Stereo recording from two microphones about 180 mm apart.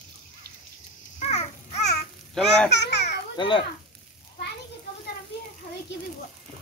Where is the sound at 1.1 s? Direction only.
35° left (ahead or behind).